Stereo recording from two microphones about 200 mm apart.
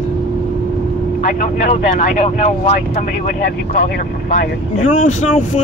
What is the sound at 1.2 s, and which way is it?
Speech, 40° left (ahead or behind).